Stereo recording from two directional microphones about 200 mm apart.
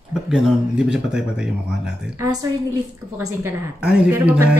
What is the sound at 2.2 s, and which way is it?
A woman's voice, 20° right (ahead or behind).